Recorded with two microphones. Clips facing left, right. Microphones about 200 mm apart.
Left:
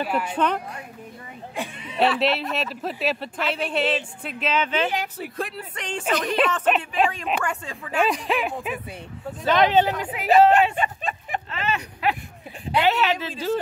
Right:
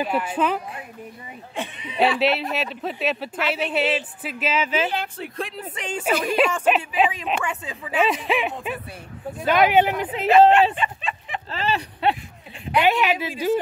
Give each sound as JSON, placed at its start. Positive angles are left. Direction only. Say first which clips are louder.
{"t": 0.0, "sound": "a woman's voice", "louder": "right 1 dB", "side_deg": -5}
{"t": 1.9, "sound": "speech", "louder": "right 1 dB", "side_deg": -5}
{"t": 4.9, "sound": "speech", "louder": "even", "side_deg": 5}
{"t": 5.8, "sound": "a woman's voice", "louder": "right 2 dB", "side_deg": -5}
{"t": 9.5, "sound": "a woman's voice", "louder": "right 1 dB", "side_deg": -10}
{"t": 10.8, "sound": "a sound", "louder": "left 1 dB", "side_deg": 45}
{"t": 11.5, "sound": "speech", "louder": "right 6 dB", "side_deg": -30}
{"t": 12.8, "sound": "a woman's voice", "louder": "right 1 dB", "side_deg": -15}